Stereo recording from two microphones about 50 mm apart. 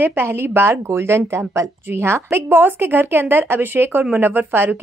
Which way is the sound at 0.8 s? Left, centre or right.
Right.